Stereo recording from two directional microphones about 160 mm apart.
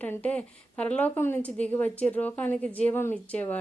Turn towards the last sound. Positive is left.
turn(degrees=10)  # may be behind; listen again after turning